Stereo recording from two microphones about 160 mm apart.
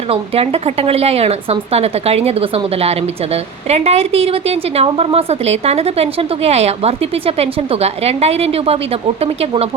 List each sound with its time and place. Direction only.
0.1 s a woman's voice: 40° right (ahead or behind)